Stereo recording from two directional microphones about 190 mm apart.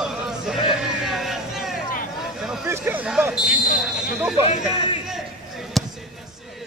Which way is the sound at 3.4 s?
45° left (ahead or behind).